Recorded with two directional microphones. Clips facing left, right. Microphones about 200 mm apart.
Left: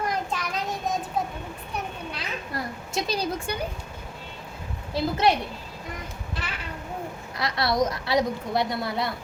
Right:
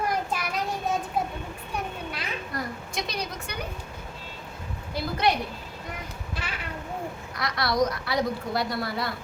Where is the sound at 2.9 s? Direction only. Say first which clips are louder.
Left 8 dB; 30° left (ahead or behind).